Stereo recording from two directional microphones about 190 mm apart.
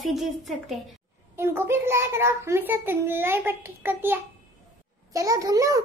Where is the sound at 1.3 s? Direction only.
15° right (ahead or behind).